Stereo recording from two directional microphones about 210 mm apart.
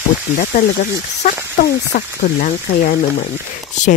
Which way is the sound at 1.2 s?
40° left (ahead or behind).